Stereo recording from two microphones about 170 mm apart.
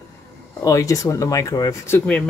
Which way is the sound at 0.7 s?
20° left (ahead or behind).